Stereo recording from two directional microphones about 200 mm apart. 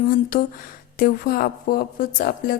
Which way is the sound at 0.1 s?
45° left (ahead or behind).